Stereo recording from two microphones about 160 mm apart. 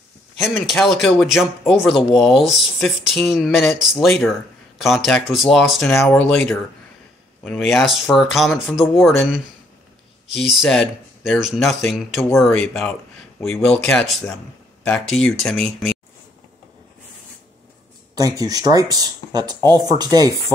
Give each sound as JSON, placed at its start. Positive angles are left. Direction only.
{"t": 0.7, "sound": "speech", "side_deg": 0}
{"t": 18.1, "sound": "speech", "side_deg": -20}